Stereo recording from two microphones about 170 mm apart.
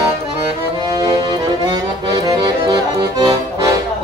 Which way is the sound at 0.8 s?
20° right (ahead or behind).